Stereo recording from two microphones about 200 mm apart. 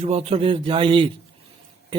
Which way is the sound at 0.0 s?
30° right (ahead or behind).